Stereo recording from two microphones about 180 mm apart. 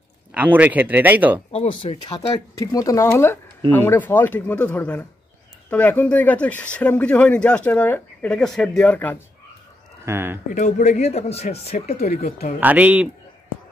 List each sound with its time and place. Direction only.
0.3 s speech: 10° right (ahead or behind)
1.5 s speech: 35° left (ahead or behind); by 9.2 s 10° left (ahead or behind)
10.0 s speech: 15° right (ahead or behind)
10.5 s speech: 45° left (ahead or behind)
12.5 s speech: 10° right (ahead or behind)